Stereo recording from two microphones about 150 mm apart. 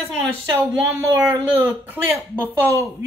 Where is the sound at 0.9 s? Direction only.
15° right (ahead or behind).